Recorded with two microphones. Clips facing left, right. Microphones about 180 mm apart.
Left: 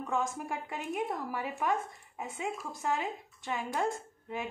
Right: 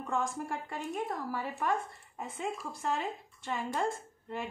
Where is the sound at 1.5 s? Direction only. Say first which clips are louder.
Left 1 dB; 5° left (ahead or behind).